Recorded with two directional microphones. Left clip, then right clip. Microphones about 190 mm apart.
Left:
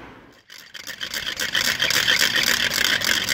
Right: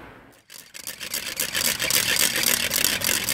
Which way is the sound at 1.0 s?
25° right (ahead or behind).